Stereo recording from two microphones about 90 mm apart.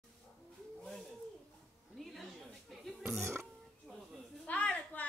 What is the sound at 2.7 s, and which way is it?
Burping, centre (ahead or behind).